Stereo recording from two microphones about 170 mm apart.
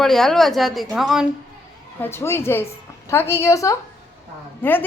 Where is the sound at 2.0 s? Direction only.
15° left (ahead or behind).